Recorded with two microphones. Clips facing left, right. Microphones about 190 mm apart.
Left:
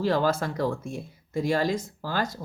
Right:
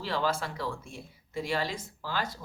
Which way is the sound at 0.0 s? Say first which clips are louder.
Left 7 dB; 45° left (ahead or behind).